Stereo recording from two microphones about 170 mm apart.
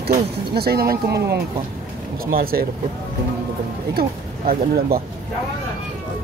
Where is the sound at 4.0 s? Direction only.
65° right (ahead or behind).